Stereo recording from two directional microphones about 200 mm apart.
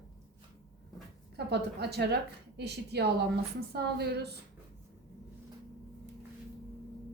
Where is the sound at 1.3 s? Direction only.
55° right (ahead or behind).